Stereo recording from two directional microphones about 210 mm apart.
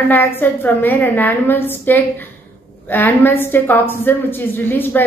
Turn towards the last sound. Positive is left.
turn(degrees=10)  # may be behind; listen again after turning